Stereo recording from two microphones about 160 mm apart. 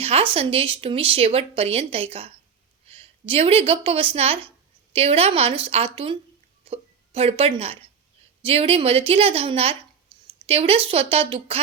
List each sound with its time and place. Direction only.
0.0 s a woman's voice: 35° right (ahead or behind)